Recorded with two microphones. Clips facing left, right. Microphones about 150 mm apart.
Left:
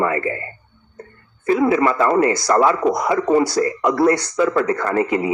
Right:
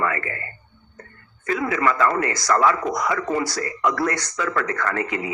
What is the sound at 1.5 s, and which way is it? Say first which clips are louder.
Speech: left 6 dB; 30° left (ahead or behind).